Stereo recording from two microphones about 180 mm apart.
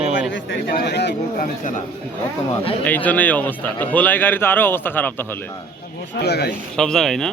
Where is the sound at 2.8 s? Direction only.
10° left (ahead or behind).